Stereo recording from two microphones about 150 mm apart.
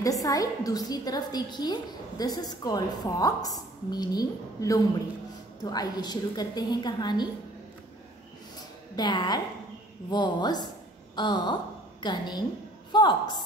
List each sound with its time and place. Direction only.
0.0 s a woman's voice: 25° left (ahead or behind)
8.9 s a woman's voice: 30° left (ahead or behind)